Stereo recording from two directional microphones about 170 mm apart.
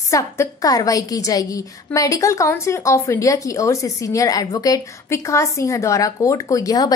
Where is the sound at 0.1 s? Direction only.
20° left (ahead or behind).